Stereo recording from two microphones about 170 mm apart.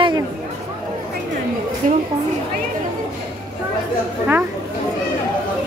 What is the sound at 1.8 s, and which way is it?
Speech, 50° right (ahead or behind).